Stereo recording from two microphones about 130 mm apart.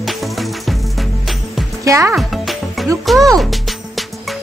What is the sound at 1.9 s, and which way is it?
Speech, 25° right (ahead or behind).